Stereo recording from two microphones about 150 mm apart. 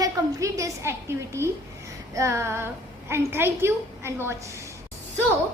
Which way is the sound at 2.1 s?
20° right (ahead or behind).